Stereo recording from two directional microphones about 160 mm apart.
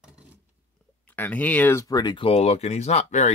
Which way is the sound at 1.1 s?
10° left (ahead or behind).